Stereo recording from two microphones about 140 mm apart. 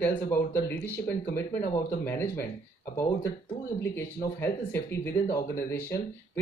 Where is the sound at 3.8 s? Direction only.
15° left (ahead or behind).